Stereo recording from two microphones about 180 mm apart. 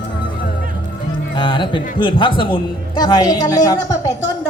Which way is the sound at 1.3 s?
25° left (ahead or behind).